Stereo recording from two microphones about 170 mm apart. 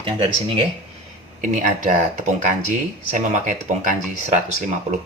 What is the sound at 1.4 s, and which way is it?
Speech, 50° right (ahead or behind).